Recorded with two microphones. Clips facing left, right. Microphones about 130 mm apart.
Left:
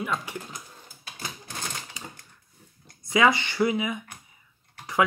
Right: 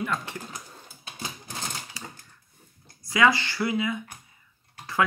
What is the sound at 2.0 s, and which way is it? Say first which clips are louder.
Typewriter: even; 20° left (ahead or behind).